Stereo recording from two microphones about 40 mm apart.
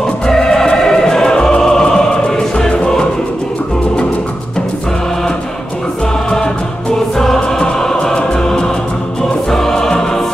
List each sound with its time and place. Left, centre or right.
0.0 s music: centre
7.2 s music: centre